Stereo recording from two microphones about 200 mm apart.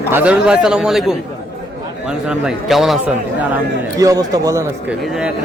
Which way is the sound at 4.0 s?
15° right (ahead or behind).